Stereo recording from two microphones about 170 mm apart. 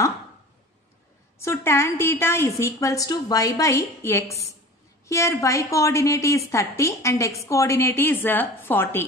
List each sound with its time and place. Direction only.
1.4 s a woman's voice: 15° left (ahead or behind)